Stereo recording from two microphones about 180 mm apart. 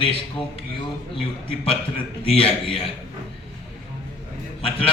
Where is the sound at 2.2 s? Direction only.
30° left (ahead or behind).